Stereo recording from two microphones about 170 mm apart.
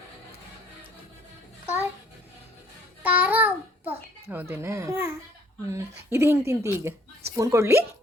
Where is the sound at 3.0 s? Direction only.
10° right (ahead or behind).